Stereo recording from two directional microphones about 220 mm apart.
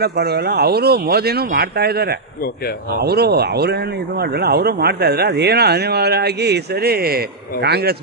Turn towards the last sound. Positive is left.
turn(degrees=-45)  # may be behind; listen again after turning